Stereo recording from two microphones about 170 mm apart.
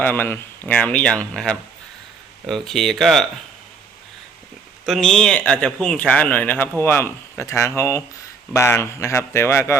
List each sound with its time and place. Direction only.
0.0 s speech: 10° left (ahead or behind)
4.9 s speech: 5° left (ahead or behind)